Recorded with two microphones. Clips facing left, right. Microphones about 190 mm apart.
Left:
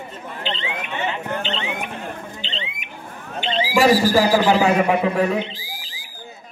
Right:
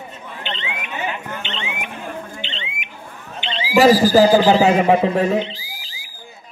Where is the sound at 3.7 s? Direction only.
30° right (ahead or behind).